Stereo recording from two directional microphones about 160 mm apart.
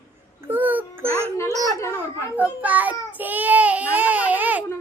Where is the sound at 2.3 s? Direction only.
10° right (ahead or behind).